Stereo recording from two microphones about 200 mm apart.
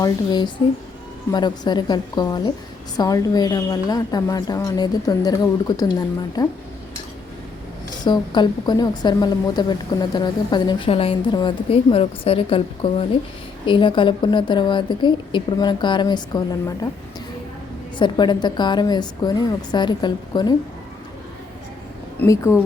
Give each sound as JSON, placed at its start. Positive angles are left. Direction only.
{"t": 0.0, "sound": "a woman's voice", "side_deg": 20}
{"t": 8.0, "sound": "a woman's voice", "side_deg": 20}
{"t": 17.9, "sound": "a woman's voice", "side_deg": 25}
{"t": 22.2, "sound": "speech", "side_deg": 10}